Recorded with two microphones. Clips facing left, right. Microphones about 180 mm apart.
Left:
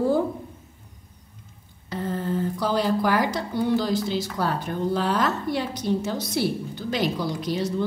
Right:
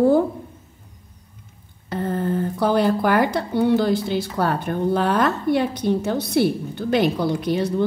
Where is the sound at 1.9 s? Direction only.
55° right (ahead or behind).